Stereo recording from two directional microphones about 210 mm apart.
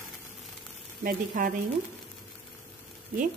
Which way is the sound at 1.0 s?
40° right (ahead or behind).